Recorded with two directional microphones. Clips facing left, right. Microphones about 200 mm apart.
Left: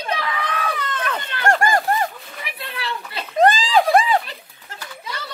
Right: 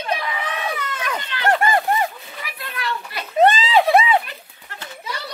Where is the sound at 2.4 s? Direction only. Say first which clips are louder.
Right 1 dB; 25° left (ahead or behind).